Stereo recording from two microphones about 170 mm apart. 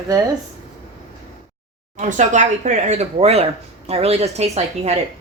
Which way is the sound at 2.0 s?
45° right (ahead or behind).